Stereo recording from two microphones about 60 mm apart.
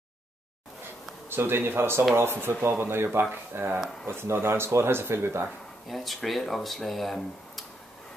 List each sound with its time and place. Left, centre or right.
1.3 s speech: right
5.9 s speech: centre